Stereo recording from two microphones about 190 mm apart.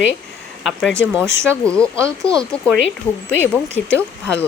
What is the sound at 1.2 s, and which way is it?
Speech, 15° right (ahead or behind).